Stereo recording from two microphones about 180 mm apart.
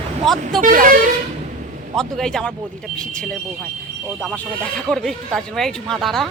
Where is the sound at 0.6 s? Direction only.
50° right (ahead or behind).